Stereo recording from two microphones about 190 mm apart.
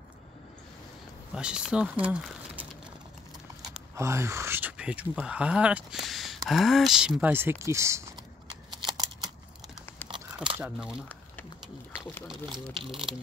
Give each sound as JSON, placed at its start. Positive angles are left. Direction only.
{"t": 1.3, "sound": "speech", "side_deg": -5}
{"t": 3.9, "sound": "speech", "side_deg": -15}
{"t": 8.6, "sound": "shuffling cards", "side_deg": -20}
{"t": 10.6, "sound": "speech", "side_deg": -5}